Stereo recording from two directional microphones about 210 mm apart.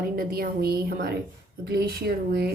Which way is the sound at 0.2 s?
45° right (ahead or behind).